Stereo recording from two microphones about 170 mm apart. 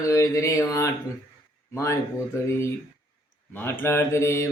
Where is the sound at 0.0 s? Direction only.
20° left (ahead or behind).